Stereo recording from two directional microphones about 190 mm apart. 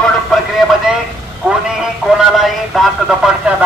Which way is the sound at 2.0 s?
5° right (ahead or behind).